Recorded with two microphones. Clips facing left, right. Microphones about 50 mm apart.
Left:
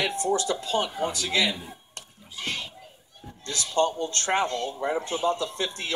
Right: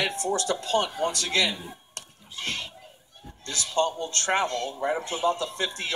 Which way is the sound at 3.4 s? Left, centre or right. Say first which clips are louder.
Left 1 dB; right.